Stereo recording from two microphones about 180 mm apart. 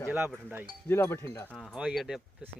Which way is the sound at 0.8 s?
15° left (ahead or behind).